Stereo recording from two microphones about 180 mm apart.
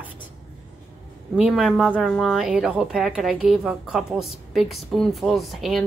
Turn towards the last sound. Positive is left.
turn(degrees=0)  # may be behind; listen again after turning